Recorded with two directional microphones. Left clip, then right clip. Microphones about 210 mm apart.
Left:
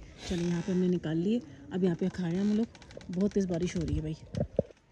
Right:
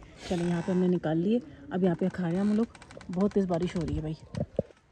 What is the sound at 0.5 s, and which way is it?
Speech, 60° right (ahead or behind).